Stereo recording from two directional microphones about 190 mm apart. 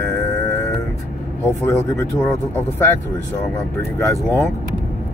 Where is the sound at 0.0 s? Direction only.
15° left (ahead or behind).